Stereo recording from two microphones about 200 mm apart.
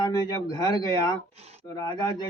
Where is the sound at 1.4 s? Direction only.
30° right (ahead or behind).